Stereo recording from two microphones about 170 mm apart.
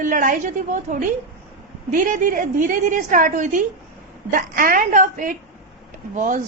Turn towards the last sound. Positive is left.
turn(degrees=-45)  # may be behind; listen again after turning